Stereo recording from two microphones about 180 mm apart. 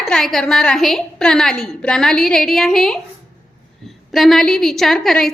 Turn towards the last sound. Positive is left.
turn(degrees=0)  # may be behind; listen again after turning